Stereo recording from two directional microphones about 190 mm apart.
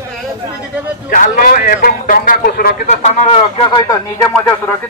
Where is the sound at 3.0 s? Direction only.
30° left (ahead or behind).